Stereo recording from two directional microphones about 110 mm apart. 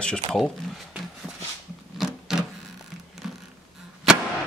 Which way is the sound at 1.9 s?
5° right (ahead or behind).